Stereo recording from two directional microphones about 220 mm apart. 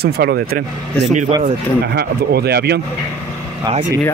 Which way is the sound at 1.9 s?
45° right (ahead or behind).